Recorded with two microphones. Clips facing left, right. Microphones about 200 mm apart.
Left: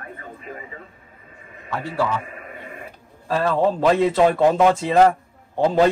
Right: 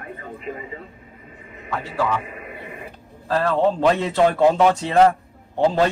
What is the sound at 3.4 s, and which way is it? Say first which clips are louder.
Speech: even; 5° left (ahead or behind).